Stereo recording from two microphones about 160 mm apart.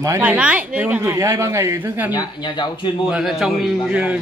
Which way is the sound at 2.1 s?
25° left (ahead or behind).